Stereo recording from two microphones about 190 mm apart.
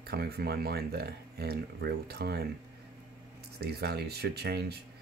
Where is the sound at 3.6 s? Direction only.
60° right (ahead or behind).